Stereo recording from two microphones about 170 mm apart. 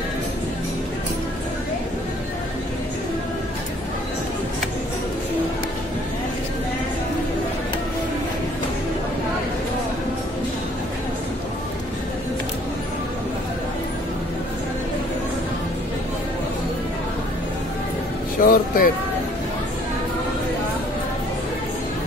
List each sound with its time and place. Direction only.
18.4 s speech: 55° left (ahead or behind)